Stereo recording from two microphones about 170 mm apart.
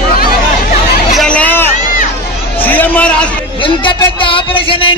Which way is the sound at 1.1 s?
5° left (ahead or behind).